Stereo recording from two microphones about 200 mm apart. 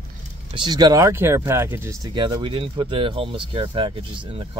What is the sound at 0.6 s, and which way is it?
Speech, 20° right (ahead or behind).